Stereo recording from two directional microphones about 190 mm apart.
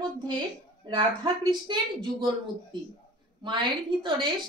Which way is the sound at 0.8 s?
20° right (ahead or behind).